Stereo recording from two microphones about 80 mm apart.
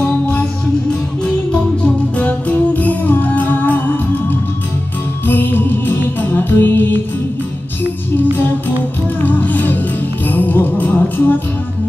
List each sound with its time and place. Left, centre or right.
0.0 s music: left
2.1 s music: centre
9.2 s music: left